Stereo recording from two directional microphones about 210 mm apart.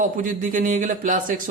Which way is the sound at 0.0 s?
40° right (ahead or behind).